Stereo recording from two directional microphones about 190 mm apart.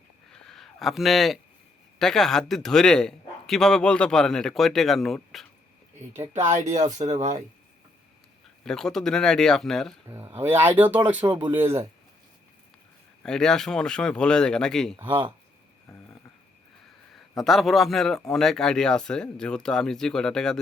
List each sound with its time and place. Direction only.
0.3 s a sound: 5° left (ahead or behind)
2.0 s a man's voice: centre (ahead or behind)
6.3 s speech: 40° right (ahead or behind)
8.6 s a man's voice: centre (ahead or behind)
10.1 s speech: 10° right (ahead or behind)
13.2 s a man's voice: 5° left (ahead or behind)
14.9 s speech: 25° right (ahead or behind)
17.2 s a man's voice: centre (ahead or behind)